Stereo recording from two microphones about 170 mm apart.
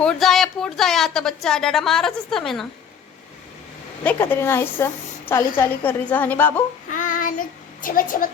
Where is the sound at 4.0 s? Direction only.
10° left (ahead or behind).